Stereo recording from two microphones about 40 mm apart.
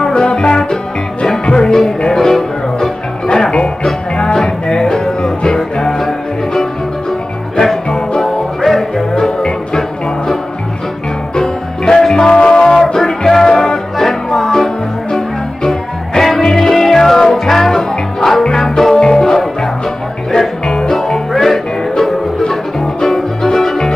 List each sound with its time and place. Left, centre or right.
0.0 s music: left
3.5 s music: left; by 9.0 s centre
11.3 s music: centre
12.3 s music: left; by 14.7 s centre
16.2 s music: centre